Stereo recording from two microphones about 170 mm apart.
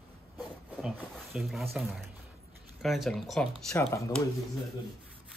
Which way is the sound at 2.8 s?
Centre (ahead or behind).